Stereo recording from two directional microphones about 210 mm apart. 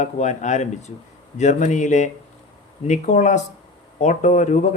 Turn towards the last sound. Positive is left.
turn(degrees=35)  # may be behind; listen again after turning